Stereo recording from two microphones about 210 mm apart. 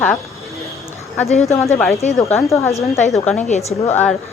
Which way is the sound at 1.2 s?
30° left (ahead or behind).